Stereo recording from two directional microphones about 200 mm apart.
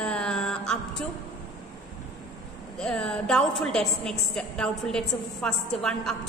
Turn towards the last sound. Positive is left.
turn(degrees=5)  # may be behind; listen again after turning